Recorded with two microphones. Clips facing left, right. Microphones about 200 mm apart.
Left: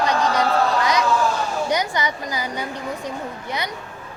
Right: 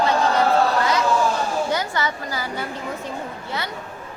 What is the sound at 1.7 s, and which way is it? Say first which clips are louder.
Speech: left 1 dB; 15° left (ahead or behind).